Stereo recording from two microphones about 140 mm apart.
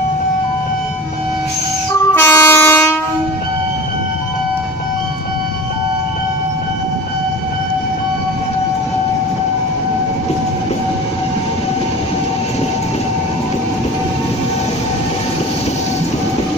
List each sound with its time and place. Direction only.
2.1 s train: 15° left (ahead or behind)